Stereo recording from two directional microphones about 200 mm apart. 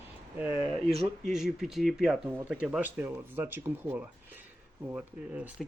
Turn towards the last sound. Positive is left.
turn(degrees=-5)  # may be behind; listen again after turning